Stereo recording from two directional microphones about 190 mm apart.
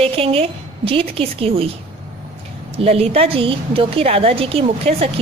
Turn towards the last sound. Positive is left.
turn(degrees=-30)  # may be behind; listen again after turning